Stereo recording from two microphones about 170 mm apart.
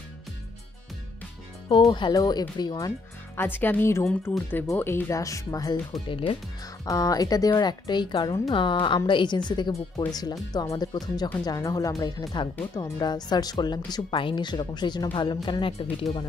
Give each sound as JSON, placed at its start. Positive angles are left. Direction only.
{"t": 1.9, "sound": "a woman's voice", "side_deg": 25}
{"t": 3.3, "sound": "speech", "side_deg": 10}
{"t": 6.0, "sound": "speech", "side_deg": 30}
{"t": 6.9, "sound": "a woman's voice", "side_deg": 20}